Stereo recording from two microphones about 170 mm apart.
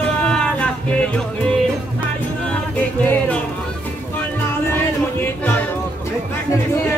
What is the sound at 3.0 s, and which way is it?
Music, 10° left (ahead or behind).